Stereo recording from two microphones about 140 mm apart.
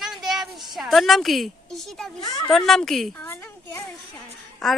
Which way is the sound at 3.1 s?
15° left (ahead or behind).